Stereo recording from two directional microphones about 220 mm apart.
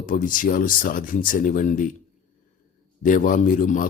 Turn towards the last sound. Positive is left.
turn(degrees=35)  # may be behind; listen again after turning